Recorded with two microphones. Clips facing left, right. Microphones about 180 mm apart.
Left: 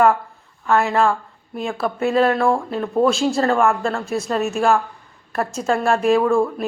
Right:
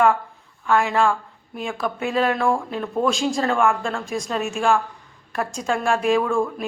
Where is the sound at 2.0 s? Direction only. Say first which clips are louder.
Left 5 dB; 40° left (ahead or behind).